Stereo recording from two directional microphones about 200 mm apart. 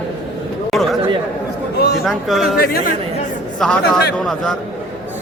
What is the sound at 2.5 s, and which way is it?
Speech, 50° left (ahead or behind).